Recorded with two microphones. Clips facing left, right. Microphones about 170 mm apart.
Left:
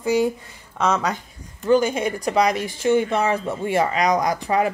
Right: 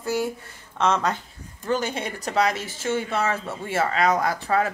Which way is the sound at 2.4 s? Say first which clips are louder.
Left 2 dB; 15° left (ahead or behind).